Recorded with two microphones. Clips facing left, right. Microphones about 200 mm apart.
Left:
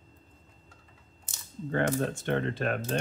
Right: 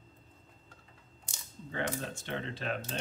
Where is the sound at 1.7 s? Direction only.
55° left (ahead or behind).